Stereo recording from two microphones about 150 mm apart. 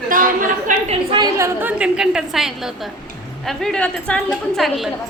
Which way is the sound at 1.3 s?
15° right (ahead or behind).